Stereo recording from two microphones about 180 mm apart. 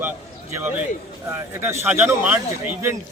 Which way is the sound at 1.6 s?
10° right (ahead or behind).